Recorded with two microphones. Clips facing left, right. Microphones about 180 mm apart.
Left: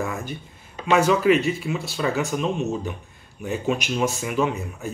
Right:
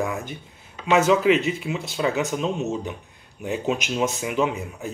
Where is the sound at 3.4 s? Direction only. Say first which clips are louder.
Even; 20° right (ahead or behind).